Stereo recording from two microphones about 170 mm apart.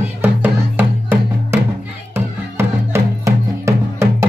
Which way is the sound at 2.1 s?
15° right (ahead or behind).